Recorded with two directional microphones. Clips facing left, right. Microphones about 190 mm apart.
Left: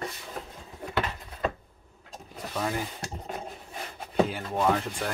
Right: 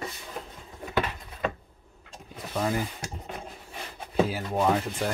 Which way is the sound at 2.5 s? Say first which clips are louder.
Right 3 dB; 5° right (ahead or behind).